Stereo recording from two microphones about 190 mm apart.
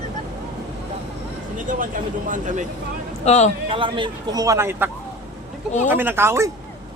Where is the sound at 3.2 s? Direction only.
35° left (ahead or behind).